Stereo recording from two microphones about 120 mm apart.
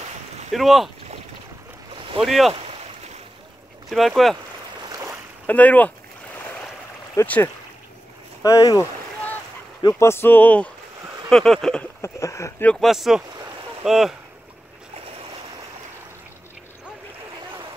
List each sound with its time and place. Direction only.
0.5 s speech: centre (ahead or behind)
2.2 s speech: centre (ahead or behind)
3.9 s speech: centre (ahead or behind)
5.5 s boat: 15° left (ahead or behind)
7.2 s speech: 10° left (ahead or behind)
8.4 s speech: 30° left (ahead or behind)
9.8 s speech: 20° left (ahead or behind); by 11.9 s 5° left (ahead or behind)
12.0 s speech: 25° left (ahead or behind)
12.8 s speech: centre (ahead or behind)